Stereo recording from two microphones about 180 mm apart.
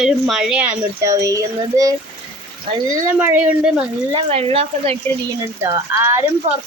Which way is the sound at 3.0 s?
10° right (ahead or behind).